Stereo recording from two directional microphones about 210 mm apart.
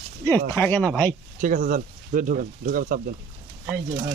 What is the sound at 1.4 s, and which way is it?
Speech, 40° right (ahead or behind).